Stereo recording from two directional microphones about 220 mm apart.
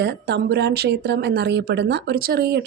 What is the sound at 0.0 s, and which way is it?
Speech, 50° right (ahead or behind).